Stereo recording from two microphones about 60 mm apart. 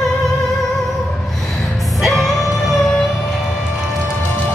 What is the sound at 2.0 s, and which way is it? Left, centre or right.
Music, centre.